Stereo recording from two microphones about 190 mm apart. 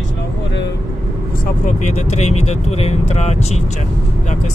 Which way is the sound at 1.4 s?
40° left (ahead or behind).